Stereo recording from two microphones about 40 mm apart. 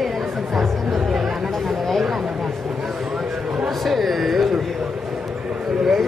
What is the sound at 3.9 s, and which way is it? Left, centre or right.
Speech, centre.